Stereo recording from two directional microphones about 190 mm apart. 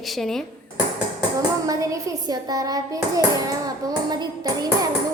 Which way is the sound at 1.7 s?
15° right (ahead or behind).